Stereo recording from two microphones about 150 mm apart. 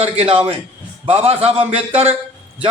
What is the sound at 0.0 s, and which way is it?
A man's voice, 40° right (ahead or behind).